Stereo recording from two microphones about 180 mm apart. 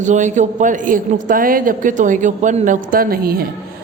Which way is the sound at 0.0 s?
40° right (ahead or behind).